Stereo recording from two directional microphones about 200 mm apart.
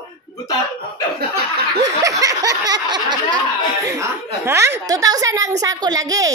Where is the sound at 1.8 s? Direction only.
15° right (ahead or behind).